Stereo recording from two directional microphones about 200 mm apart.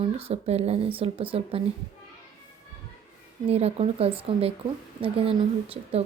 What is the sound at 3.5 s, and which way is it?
A woman's voice, 30° right (ahead or behind).